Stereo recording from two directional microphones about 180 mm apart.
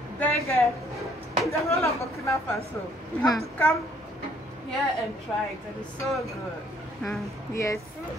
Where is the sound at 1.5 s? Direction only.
15° left (ahead or behind).